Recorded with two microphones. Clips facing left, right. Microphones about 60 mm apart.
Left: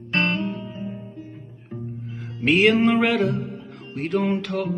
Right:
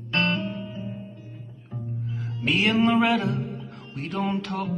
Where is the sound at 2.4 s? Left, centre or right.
Left.